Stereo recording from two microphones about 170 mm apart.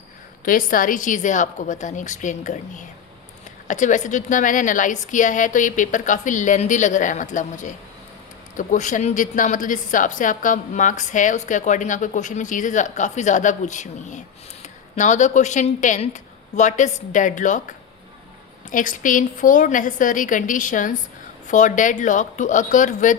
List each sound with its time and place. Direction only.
0.4 s speech: 55° left (ahead or behind)